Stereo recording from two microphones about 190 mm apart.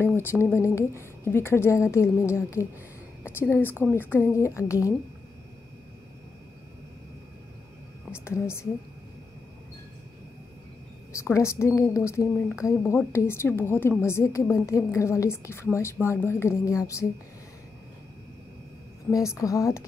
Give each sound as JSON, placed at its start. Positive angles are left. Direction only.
{"t": 0.0, "sound": "speech", "side_deg": 10}
{"t": 8.1, "sound": "speech", "side_deg": 15}
{"t": 11.1, "sound": "speech", "side_deg": 15}
{"t": 19.0, "sound": "speech", "side_deg": 15}